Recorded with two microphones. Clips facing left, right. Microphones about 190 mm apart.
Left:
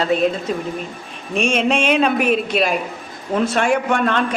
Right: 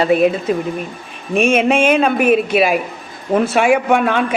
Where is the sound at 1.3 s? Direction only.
55° right (ahead or behind).